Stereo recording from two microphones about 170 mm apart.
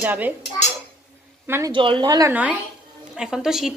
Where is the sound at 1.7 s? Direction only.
30° right (ahead or behind).